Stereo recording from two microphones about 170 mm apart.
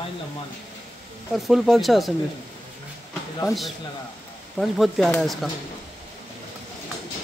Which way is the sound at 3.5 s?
Centre (ahead or behind).